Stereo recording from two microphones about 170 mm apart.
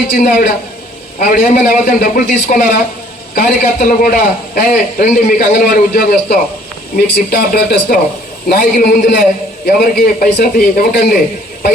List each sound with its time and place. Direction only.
0.1 s a man's voice: 50° left (ahead or behind)